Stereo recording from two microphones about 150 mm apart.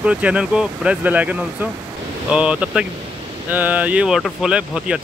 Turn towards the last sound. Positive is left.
turn(degrees=-5)  # may be behind; listen again after turning